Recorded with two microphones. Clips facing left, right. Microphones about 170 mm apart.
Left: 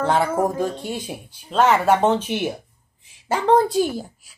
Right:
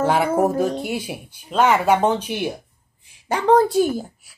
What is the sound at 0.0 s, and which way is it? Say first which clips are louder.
Music: right 1 dB; 10° right (ahead or behind).